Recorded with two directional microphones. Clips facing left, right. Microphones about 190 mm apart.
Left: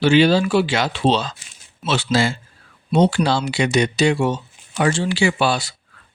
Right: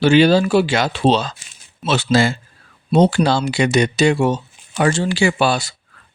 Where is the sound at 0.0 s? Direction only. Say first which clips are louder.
Right 2 dB; 45° right (ahead or behind).